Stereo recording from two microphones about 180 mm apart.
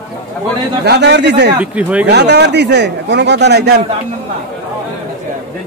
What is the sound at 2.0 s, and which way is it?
Speech, 70° right (ahead or behind).